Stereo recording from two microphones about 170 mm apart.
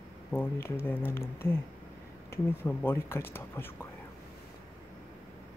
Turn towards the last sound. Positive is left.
turn(degrees=15)  # may be behind; listen again after turning